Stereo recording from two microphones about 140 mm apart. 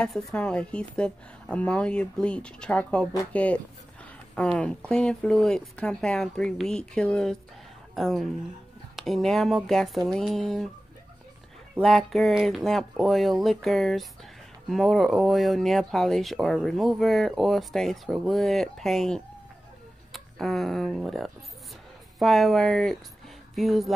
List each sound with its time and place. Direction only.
0.0 s speech: 5° left (ahead or behind)
11.8 s speech: centre (ahead or behind)